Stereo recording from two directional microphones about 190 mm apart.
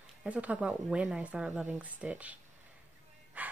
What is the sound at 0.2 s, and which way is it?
Speech, 5° right (ahead or behind).